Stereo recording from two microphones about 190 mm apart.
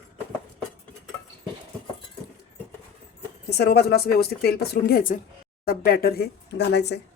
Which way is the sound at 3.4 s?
60° left (ahead or behind).